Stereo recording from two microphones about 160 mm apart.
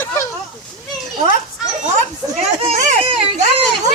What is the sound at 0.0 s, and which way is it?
Children playing, 15° left (ahead or behind).